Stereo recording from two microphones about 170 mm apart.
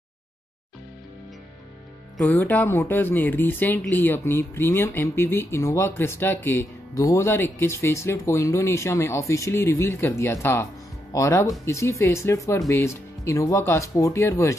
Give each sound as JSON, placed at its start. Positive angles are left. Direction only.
{"t": 2.1, "sound": "speech", "side_deg": 10}